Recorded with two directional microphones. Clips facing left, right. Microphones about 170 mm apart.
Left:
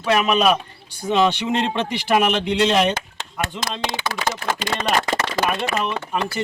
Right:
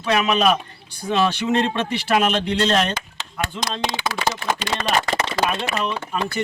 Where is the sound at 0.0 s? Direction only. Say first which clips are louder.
Left 1 dB; 5° left (ahead or behind).